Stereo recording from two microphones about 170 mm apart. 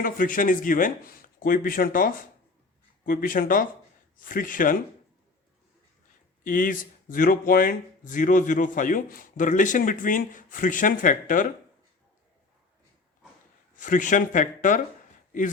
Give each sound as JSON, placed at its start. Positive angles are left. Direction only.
{"t": 0.0, "sound": "speech", "side_deg": 55}
{"t": 6.4, "sound": "speech", "side_deg": 55}
{"t": 13.7, "sound": "speech", "side_deg": 50}